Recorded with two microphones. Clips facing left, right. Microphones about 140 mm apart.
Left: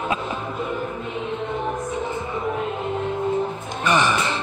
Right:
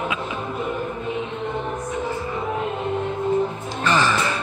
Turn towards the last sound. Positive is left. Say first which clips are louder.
# even
turn(degrees=15)  # may be behind; listen again after turning